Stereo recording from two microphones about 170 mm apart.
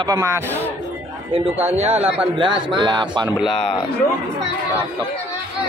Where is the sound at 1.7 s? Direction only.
40° right (ahead or behind).